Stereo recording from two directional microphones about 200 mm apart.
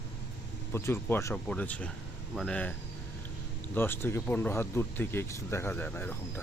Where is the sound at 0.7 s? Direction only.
10° left (ahead or behind).